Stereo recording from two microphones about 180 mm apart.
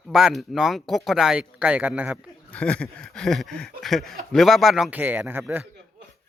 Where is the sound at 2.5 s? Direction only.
5° left (ahead or behind); by 5.6 s 15° right (ahead or behind).